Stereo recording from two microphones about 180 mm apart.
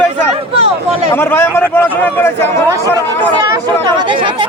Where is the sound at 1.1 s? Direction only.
10° left (ahead or behind).